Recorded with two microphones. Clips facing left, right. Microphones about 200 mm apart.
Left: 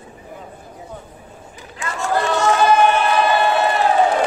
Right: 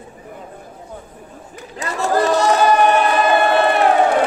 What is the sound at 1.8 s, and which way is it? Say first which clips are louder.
Crowd: right 3 dB; 40° right (ahead or behind).